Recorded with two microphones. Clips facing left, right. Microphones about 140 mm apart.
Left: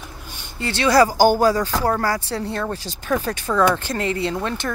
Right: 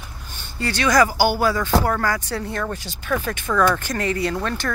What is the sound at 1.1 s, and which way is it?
Speech, 45° left (ahead or behind).